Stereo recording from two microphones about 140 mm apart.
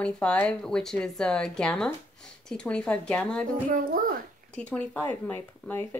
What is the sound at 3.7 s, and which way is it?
Speech, 85° right.